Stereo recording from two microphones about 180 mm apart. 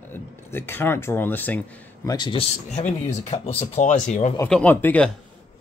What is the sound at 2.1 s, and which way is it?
Speech, 25° left (ahead or behind).